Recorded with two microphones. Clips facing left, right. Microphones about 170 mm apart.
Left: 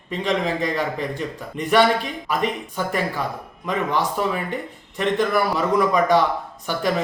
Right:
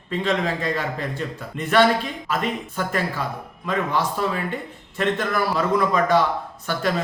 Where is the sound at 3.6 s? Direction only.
15° left (ahead or behind).